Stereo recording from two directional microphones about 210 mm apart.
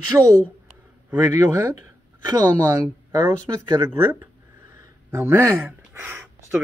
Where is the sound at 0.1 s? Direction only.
10° right (ahead or behind).